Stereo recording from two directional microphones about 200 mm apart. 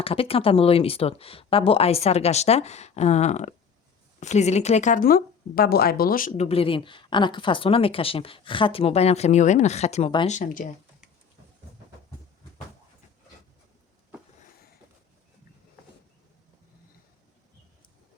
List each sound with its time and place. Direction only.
0.0 s speech: 30° left (ahead or behind)
10.2 s speech: 40° left (ahead or behind)